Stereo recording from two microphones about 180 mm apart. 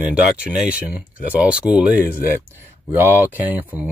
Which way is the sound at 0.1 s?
5° right (ahead or behind).